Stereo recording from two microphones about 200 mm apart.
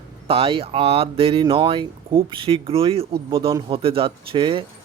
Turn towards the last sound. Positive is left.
turn(degrees=-25)  # may be behind; listen again after turning